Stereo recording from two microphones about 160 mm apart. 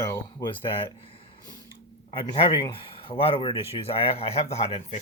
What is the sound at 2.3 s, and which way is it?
Speech, 35° left (ahead or behind).